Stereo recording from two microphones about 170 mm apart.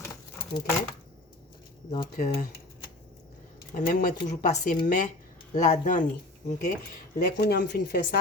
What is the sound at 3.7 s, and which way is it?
Speech, 55° left (ahead or behind).